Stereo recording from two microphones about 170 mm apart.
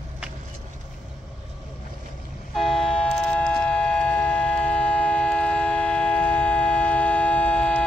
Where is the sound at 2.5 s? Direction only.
5° left (ahead or behind).